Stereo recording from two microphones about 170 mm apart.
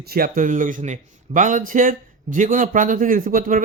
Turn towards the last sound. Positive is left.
turn(degrees=-55)  # may be behind; listen again after turning